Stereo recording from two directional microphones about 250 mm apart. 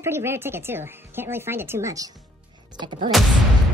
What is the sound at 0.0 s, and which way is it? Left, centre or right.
Speech, centre.